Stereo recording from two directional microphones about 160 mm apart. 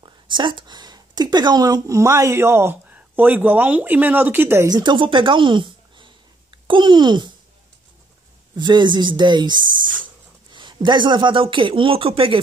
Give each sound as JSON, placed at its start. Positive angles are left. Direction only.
{"t": 0.0, "sound": "speech", "side_deg": -30}
{"t": 8.5, "sound": "speech", "side_deg": -25}